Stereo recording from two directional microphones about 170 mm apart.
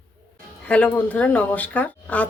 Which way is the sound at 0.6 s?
5° left (ahead or behind).